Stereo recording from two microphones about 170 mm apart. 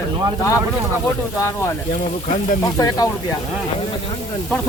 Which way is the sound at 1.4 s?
15° left (ahead or behind).